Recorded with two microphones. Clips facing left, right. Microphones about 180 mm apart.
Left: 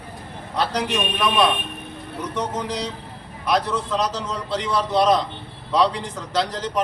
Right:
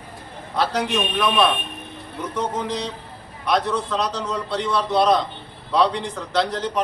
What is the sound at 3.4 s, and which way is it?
A man's voice, 5° left (ahead or behind).